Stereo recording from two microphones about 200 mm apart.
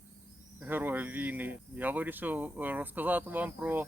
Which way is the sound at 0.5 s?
10° right (ahead or behind).